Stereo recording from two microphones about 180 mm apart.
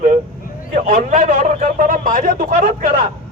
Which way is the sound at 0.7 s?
45° right (ahead or behind).